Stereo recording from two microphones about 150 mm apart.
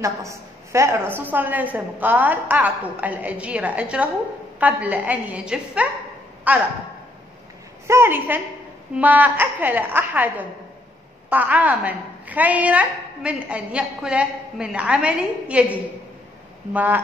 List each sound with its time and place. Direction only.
0.0 s a woman's voice: 20° right (ahead or behind)
7.8 s a woman's voice: 15° right (ahead or behind)